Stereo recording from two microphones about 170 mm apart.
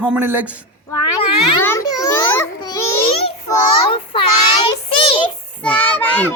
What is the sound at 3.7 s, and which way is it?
Speech, 30° left (ahead or behind).